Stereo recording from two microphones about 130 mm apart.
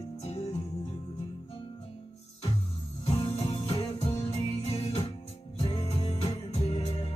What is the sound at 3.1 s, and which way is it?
Music, 55° left (ahead or behind).